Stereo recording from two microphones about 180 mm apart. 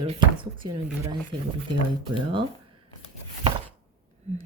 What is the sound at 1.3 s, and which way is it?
Speech, 25° right (ahead or behind).